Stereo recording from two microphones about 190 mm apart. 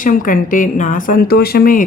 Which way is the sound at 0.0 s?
45° left (ahead or behind).